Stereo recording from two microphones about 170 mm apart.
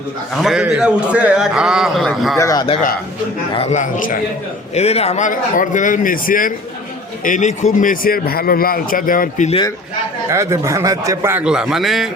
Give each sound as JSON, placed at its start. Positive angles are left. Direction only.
{"t": 0.4, "sound": "a man's voice", "side_deg": -5}
{"t": 2.4, "sound": "a man's voice", "side_deg": 20}
{"t": 3.5, "sound": "speech", "side_deg": 40}
{"t": 4.7, "sound": "speech", "side_deg": 40}
{"t": 10.2, "sound": "a man's voice", "side_deg": -15}